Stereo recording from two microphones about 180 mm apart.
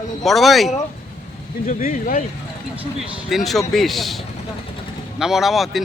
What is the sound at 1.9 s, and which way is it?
Speech, 45° left (ahead or behind).